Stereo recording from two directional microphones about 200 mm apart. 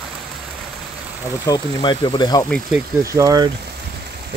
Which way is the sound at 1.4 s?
20° left (ahead or behind).